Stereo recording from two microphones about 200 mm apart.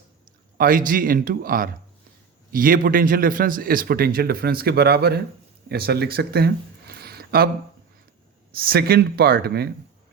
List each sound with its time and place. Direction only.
0.5 s a man's voice: 45° right (ahead or behind)
8.6 s a man's voice: 50° right (ahead or behind)